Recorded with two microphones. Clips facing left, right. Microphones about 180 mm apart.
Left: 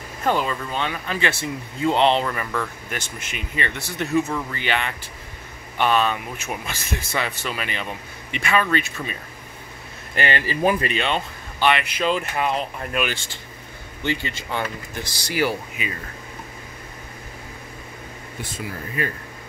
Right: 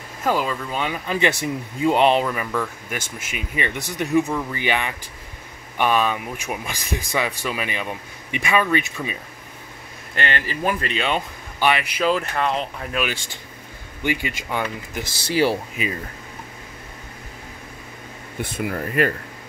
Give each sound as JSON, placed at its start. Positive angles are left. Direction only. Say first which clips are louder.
{"t": 0.2, "sound": "speech", "louder": "even", "side_deg": -5}
{"t": 10.1, "sound": "speech", "louder": "left 2 dB", "side_deg": 10}
{"t": 11.0, "sound": "speech", "louder": "right 1 dB", "side_deg": -10}
{"t": 14.0, "sound": "speech", "louder": "right 2 dB", "side_deg": -10}
{"t": 15.2, "sound": "speech", "louder": "right 4 dB", "side_deg": -30}
{"t": 18.4, "sound": "speech", "louder": "right 7 dB", "side_deg": -55}